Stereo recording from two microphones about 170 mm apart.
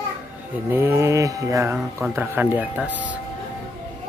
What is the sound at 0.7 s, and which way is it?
Mantra, 15° right (ahead or behind).